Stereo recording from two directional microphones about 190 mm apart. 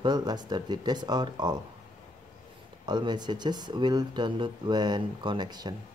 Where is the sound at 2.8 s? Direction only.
25° right (ahead or behind).